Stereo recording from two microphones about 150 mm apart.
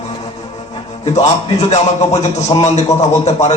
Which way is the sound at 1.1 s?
45° left (ahead or behind).